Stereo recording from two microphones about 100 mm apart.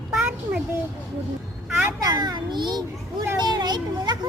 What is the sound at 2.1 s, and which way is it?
A child's voice, 45° right (ahead or behind).